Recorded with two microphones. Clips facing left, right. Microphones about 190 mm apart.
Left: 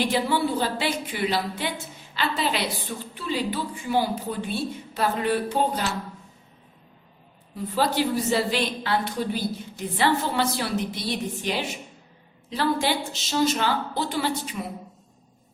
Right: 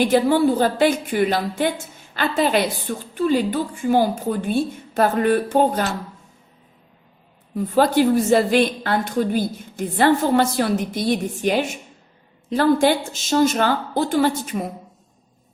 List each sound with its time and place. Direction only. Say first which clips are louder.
0.0 s a woman's voice: right 8 dB; 50° right (ahead or behind)
7.5 s a woman's voice: right 7 dB; 50° right (ahead or behind)